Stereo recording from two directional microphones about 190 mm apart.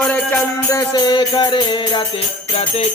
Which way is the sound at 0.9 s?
20° left (ahead or behind).